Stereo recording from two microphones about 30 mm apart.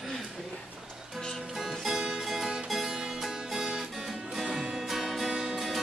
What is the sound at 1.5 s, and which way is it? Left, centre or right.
Music, centre.